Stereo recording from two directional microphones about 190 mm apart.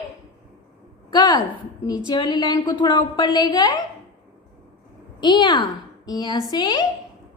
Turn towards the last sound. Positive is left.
turn(degrees=20)  # may be behind; listen again after turning